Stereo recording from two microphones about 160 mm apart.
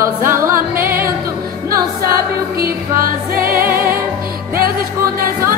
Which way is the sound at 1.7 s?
70° right (ahead or behind).